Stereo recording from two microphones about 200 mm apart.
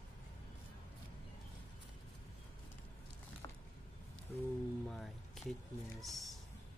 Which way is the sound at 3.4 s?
20° left (ahead or behind).